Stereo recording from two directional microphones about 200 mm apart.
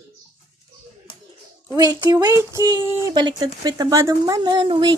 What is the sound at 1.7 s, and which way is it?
A woman's voice, 20° right (ahead or behind).